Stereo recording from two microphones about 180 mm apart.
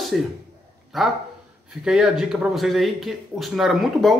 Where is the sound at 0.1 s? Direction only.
5° right (ahead or behind).